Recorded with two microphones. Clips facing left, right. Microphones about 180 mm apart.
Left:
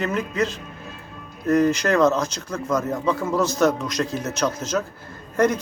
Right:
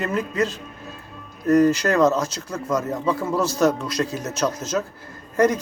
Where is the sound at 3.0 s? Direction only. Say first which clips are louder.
Even; 10° right (ahead or behind).